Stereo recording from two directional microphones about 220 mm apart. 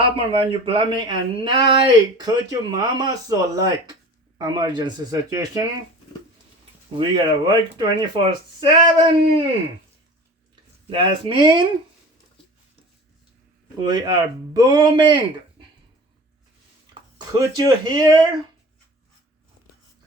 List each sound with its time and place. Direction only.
0.0 s speech: 25° right (ahead or behind)
7.4 s speech: 20° right (ahead or behind)
10.5 s speech: 25° right (ahead or behind)
13.8 s speech: 20° right (ahead or behind)
17.2 s speech: 15° right (ahead or behind)